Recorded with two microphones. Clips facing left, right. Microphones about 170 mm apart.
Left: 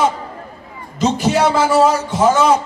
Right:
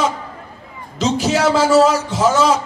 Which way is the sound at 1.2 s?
80° right.